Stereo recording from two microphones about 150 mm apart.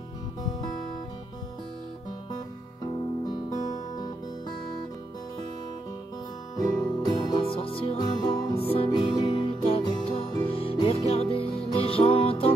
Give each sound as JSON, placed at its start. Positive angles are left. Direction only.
{"t": 6.5, "sound": "music", "side_deg": 25}